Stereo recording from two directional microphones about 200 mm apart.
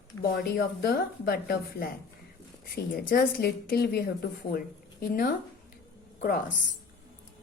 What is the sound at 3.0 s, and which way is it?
Speech, 45° left (ahead or behind).